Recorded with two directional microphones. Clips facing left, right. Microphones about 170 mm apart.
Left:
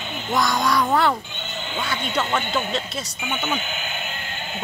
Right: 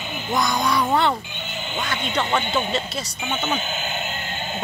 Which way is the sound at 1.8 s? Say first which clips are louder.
Even; 15° right (ahead or behind).